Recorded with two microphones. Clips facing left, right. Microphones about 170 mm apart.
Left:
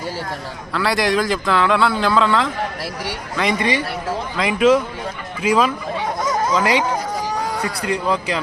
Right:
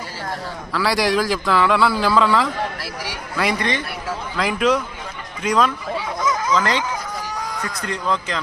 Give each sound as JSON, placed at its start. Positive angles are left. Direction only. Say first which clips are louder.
{"t": 0.7, "sound": "a man's voice", "louder": "left 1 dB", "side_deg": 0}
{"t": 6.1, "sound": "a sound", "louder": "left 3 dB", "side_deg": 40}
{"t": 6.5, "sound": "a man's voice", "louder": "left 4 dB", "side_deg": 10}